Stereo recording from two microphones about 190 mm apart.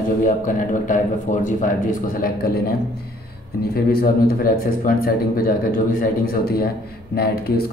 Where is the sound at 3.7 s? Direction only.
50° left (ahead or behind).